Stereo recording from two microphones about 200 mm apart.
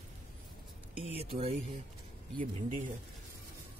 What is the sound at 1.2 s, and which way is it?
Speech, 30° right (ahead or behind).